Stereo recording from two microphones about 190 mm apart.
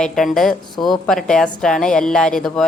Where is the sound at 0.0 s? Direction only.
Centre (ahead or behind).